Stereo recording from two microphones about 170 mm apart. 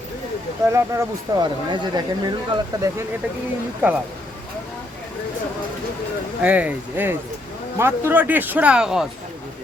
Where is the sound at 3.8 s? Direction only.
10° right (ahead or behind).